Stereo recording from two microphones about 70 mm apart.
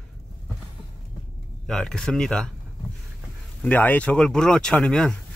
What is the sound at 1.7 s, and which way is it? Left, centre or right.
Speech, centre.